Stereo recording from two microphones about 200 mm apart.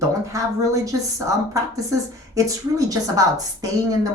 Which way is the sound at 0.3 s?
15° right (ahead or behind).